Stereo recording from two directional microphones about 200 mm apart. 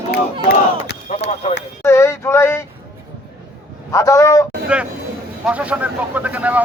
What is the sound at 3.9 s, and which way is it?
Speech, 15° left (ahead or behind).